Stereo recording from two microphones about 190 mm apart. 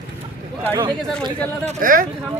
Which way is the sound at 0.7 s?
25° right (ahead or behind).